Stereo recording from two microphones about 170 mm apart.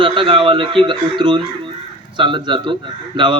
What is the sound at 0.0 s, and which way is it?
A man's voice, 30° right (ahead or behind).